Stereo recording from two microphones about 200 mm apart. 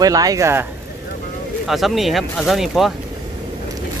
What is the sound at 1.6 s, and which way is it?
Speech, centre (ahead or behind).